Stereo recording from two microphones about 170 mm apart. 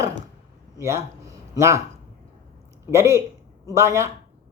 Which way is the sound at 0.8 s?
15° right (ahead or behind).